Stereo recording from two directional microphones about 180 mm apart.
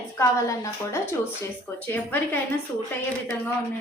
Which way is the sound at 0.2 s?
15° left (ahead or behind).